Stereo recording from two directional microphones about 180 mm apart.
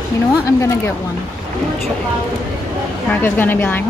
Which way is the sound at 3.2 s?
10° left (ahead or behind).